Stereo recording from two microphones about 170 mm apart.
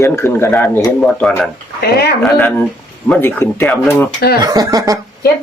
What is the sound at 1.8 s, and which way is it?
Speech, 70° left (ahead or behind).